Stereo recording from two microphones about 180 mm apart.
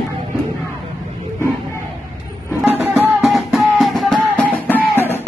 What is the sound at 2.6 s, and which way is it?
Music, 5° right (ahead or behind).